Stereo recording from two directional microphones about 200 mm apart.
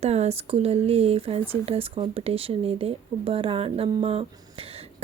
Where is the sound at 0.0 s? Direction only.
35° right (ahead or behind).